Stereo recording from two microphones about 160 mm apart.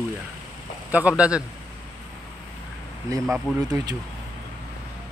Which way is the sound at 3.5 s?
10° right (ahead or behind).